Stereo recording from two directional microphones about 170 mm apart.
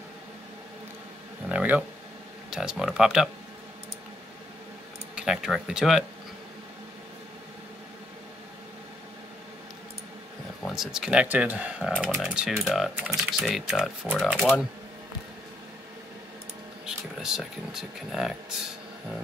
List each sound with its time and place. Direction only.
1.5 s a sound: 5° right (ahead or behind)
2.5 s speech: 5° right (ahead or behind)
5.1 s speech: centre (ahead or behind)
10.6 s speech: centre (ahead or behind)
16.8 s speech: 5° right (ahead or behind)